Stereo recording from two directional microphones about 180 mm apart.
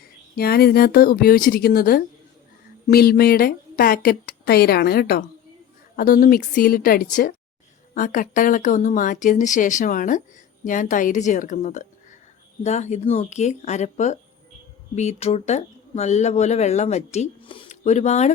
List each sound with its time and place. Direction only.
0.3 s a woman's voice: 60° left (ahead or behind); by 18.3 s 40° left (ahead or behind)